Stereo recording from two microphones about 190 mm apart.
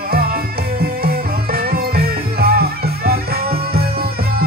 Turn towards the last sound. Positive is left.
turn(degrees=-50)  # may be behind; listen again after turning